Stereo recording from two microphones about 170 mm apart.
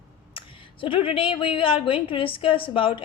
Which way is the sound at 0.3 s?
30° left (ahead or behind).